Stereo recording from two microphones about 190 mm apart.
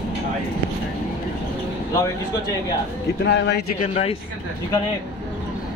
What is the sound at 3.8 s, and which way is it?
Speech, 35° left (ahead or behind).